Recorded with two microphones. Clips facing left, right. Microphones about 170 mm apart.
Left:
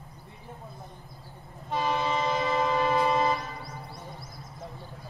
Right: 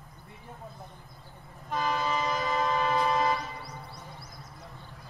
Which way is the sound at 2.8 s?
25° left (ahead or behind).